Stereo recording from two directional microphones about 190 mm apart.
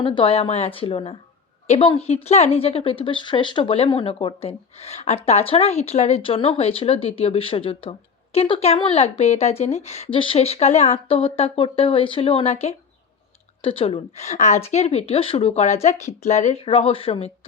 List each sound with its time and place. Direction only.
0.0 s a woman's voice: 25° left (ahead or behind)